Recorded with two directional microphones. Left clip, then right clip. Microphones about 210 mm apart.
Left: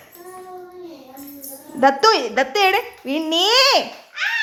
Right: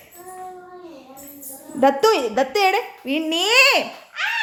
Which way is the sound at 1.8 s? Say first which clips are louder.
Left 2 dB; 10° right (ahead or behind).